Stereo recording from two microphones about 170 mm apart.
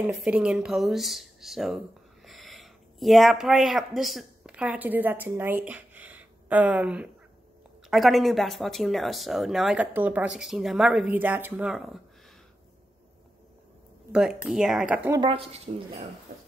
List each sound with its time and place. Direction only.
0.2 s speech: 5° right (ahead or behind)
14.1 s speech: 5° right (ahead or behind)
15.1 s speech: 30° right (ahead or behind)